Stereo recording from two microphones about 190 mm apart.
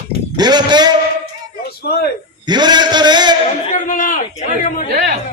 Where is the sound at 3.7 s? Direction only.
45° left (ahead or behind).